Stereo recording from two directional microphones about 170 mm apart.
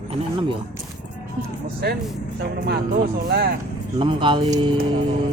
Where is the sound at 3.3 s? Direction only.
60° right (ahead or behind).